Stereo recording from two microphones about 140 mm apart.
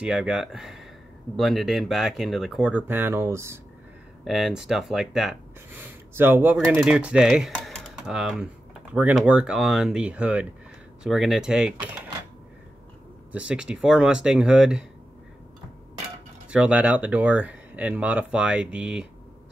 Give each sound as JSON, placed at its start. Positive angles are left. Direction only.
{"t": 0.0, "sound": "speech", "side_deg": -5}
{"t": 4.2, "sound": "speech", "side_deg": 0}
{"t": 5.7, "sound": "speech", "side_deg": -15}
{"t": 7.5, "sound": "typing", "side_deg": 5}
{"t": 8.9, "sound": "speech", "side_deg": -10}
{"t": 13.3, "sound": "speech", "side_deg": -5}
{"t": 16.4, "sound": "speech", "side_deg": -10}